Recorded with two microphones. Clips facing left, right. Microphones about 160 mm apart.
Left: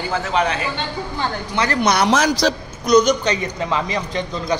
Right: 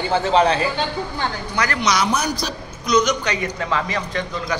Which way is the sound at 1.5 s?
25° left (ahead or behind).